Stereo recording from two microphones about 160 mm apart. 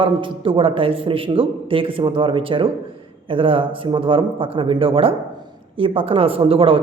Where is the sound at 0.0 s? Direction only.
35° right (ahead or behind).